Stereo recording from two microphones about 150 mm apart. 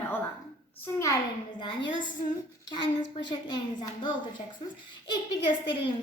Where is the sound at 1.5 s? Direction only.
30° left (ahead or behind).